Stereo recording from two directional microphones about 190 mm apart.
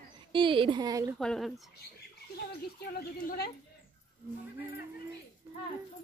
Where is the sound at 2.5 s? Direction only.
55° left (ahead or behind).